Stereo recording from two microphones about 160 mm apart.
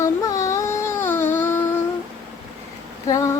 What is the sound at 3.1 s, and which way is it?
Female singing, 20° left (ahead or behind).